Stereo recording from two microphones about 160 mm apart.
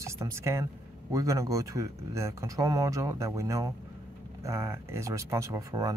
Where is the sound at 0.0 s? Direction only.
15° right (ahead or behind).